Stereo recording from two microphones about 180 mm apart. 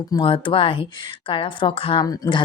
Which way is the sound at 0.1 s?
30° left (ahead or behind).